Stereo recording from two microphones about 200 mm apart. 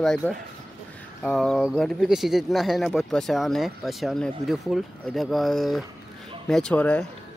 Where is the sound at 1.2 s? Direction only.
5° left (ahead or behind).